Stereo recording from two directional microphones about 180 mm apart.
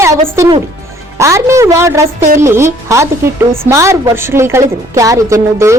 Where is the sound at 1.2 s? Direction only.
15° right (ahead or behind).